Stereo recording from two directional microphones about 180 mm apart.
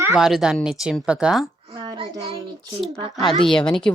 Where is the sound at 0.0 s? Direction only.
5° right (ahead or behind).